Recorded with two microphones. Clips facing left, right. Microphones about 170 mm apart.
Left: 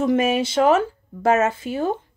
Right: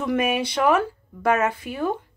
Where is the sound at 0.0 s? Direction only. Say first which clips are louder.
Left 4 dB; 25° left (ahead or behind).